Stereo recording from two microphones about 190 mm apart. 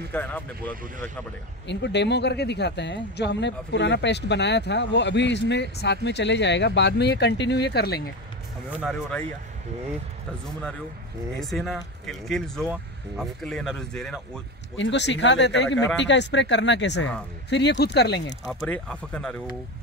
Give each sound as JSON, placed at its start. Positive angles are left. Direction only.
{"t": 0.1, "sound": "speech", "side_deg": 10}
{"t": 1.7, "sound": "speech", "side_deg": 65}
{"t": 11.3, "sound": "speech", "side_deg": 0}
{"t": 14.8, "sound": "speech", "side_deg": 70}
{"t": 18.5, "sound": "speech", "side_deg": 5}